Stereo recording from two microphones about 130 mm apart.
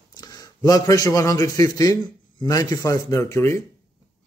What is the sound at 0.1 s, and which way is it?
A man's voice, 30° left (ahead or behind).